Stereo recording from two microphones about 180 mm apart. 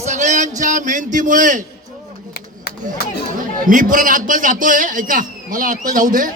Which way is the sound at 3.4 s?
50° right (ahead or behind).